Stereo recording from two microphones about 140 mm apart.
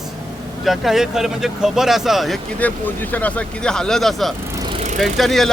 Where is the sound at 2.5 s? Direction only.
10° left (ahead or behind).